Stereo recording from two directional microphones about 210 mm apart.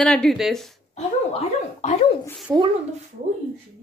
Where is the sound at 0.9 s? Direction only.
30° left (ahead or behind).